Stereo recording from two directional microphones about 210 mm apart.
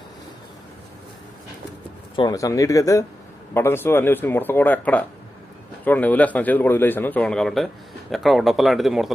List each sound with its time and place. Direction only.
2.1 s a man's voice: 15° left (ahead or behind); by 9.1 s centre (ahead or behind)